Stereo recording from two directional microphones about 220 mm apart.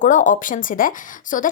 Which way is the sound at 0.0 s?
35° left (ahead or behind).